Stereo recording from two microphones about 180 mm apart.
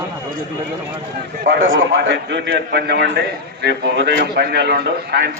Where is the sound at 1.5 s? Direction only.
90° right.